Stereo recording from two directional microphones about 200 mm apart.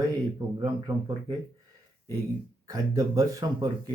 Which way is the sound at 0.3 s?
20° right (ahead or behind).